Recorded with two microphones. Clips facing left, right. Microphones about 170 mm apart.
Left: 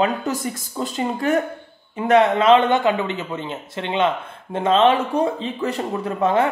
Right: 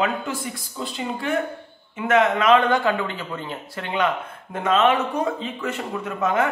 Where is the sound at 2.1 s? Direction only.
30° left (ahead or behind).